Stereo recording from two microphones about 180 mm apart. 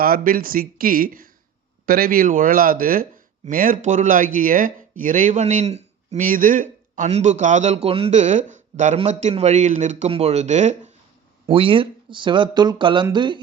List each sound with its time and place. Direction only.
0.0 s speech: 55° right (ahead or behind); by 13.4 s 25° right (ahead or behind)